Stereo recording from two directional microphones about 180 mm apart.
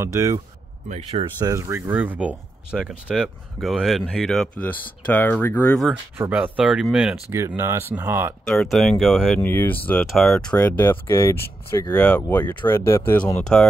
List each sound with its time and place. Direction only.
0.0 s speech: 15° right (ahead or behind)
0.8 s speech: 35° right (ahead or behind)
1.4 s speech: 15° right (ahead or behind); by 5.9 s 5° left (ahead or behind)
6.1 s speech: 10° right (ahead or behind)
7.2 s speech: 15° right (ahead or behind)
8.5 s speech: 5° left (ahead or behind)